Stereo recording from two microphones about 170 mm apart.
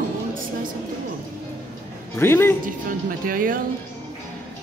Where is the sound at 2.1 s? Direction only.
15° left (ahead or behind).